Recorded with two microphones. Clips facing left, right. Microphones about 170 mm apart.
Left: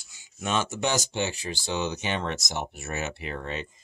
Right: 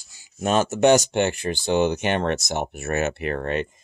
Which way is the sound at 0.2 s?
40° right (ahead or behind).